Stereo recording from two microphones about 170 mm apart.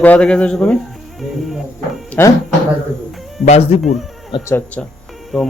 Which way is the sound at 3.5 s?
40° left (ahead or behind).